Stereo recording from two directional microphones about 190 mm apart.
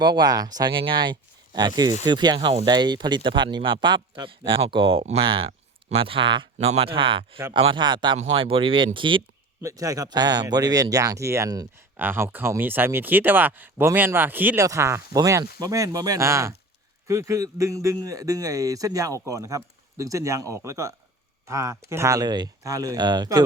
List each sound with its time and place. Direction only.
0.0 s speech: 20° right (ahead or behind)